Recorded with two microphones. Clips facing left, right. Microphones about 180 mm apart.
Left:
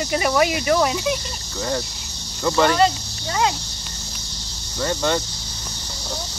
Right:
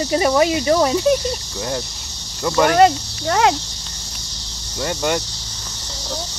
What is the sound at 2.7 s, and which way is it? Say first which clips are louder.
Speech: right 5 dB; 60° right (ahead or behind).